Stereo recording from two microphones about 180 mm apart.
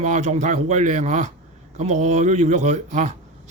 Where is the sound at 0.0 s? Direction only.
40° right (ahead or behind).